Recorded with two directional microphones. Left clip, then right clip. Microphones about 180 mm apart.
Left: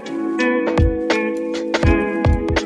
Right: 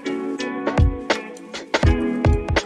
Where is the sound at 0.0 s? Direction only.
Centre (ahead or behind).